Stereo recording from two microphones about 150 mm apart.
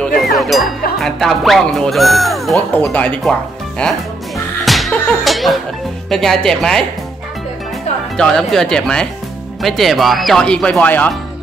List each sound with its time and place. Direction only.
0.2 s music: centre (ahead or behind)
1.0 s speech: centre (ahead or behind)
2.7 s speech: 10° left (ahead or behind)
4.6 s music: centre (ahead or behind)
6.0 s speech: centre (ahead or behind)
8.2 s speech: centre (ahead or behind)